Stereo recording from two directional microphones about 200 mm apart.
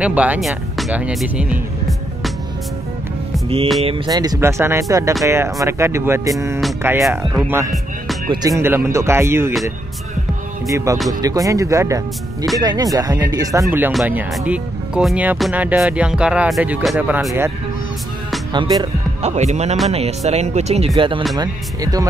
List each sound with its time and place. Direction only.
0.0 s speech: 5° right (ahead or behind)
3.8 s speech: 20° right (ahead or behind)
11.1 s speech: 15° right (ahead or behind)
18.5 s speech: 20° right (ahead or behind)
19.2 s speech: 35° right (ahead or behind); by 22.0 s 20° right (ahead or behind)